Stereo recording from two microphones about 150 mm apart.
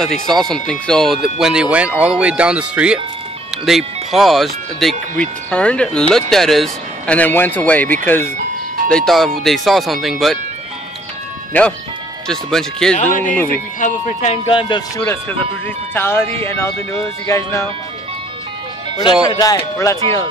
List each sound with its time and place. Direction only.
0.0 s speech: 5° left (ahead or behind)
12.3 s speech: 5° left (ahead or behind)
12.9 s speech: 55° left (ahead or behind)
13.2 s speech: 15° left (ahead or behind)
13.7 s speech: 55° left (ahead or behind)
14.5 s speech: 35° left (ahead or behind)
15.9 s speech: 15° left (ahead or behind)
19.2 s speech: 25° left (ahead or behind)